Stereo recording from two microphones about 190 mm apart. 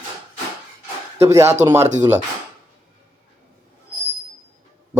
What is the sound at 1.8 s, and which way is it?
Speech, 35° right (ahead or behind).